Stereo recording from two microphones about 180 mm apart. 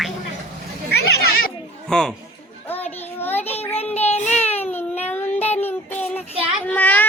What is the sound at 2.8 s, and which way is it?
Child singing, 35° left (ahead or behind).